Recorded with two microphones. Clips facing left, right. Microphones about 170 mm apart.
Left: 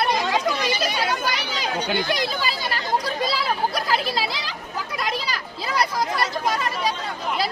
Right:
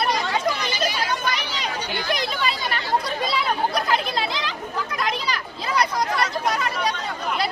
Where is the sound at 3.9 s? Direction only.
5° left (ahead or behind).